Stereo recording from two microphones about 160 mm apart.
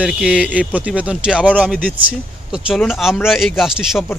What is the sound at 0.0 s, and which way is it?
Speech, 5° right (ahead or behind).